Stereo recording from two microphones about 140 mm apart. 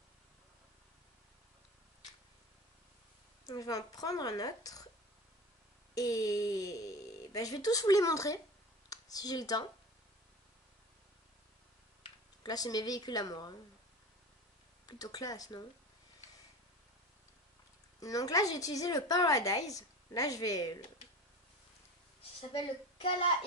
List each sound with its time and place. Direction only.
3.4 s a woman's voice: 25° left (ahead or behind)
5.9 s a woman's voice: 25° left (ahead or behind)
12.4 s a woman's voice: 25° left (ahead or behind)
14.9 s a woman's voice: 25° left (ahead or behind)
18.0 s a woman's voice: 25° left (ahead or behind)
22.5 s a child's voice: 40° left (ahead or behind)